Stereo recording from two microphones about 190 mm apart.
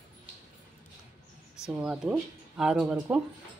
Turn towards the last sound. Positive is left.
turn(degrees=-5)  # may be behind; listen again after turning